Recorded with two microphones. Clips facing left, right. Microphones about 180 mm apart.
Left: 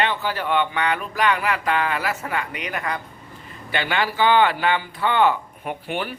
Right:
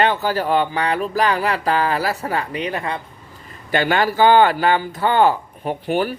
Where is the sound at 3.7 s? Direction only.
45° right (ahead or behind).